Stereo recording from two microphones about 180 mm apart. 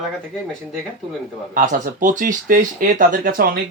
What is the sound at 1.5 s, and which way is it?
Speech, 45° right (ahead or behind).